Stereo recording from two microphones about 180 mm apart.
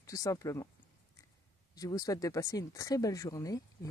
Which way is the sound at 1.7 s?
20° left (ahead or behind).